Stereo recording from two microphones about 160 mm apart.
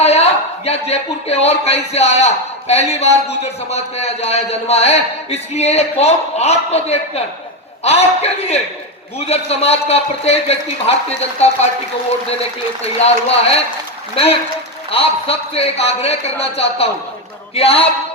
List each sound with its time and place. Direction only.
0.0 s a man's voice: 40° left (ahead or behind)
12.8 s a man's voice: 40° left (ahead or behind)
14.8 s a man's voice: 35° left (ahead or behind)